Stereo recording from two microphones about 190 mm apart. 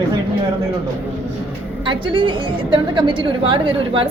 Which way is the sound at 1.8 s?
25° right (ahead or behind).